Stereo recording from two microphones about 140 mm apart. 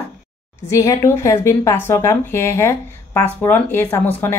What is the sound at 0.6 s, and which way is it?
Speech, 25° left (ahead or behind).